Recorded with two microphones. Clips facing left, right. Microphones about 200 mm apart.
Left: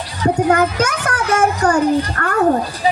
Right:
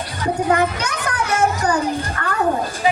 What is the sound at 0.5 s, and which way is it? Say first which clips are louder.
Child singing: left 3 dB; 45° left (ahead or behind).